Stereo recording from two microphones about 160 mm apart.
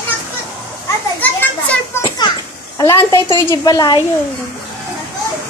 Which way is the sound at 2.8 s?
15° left (ahead or behind).